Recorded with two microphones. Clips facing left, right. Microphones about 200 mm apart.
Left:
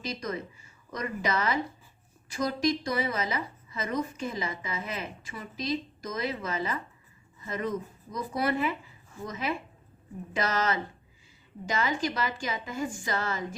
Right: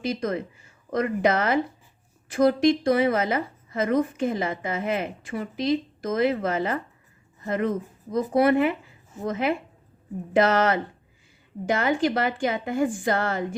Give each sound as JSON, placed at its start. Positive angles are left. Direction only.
{"t": 0.0, "sound": "speech", "side_deg": -55}